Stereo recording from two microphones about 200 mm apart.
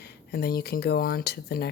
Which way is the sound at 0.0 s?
50° left (ahead or behind).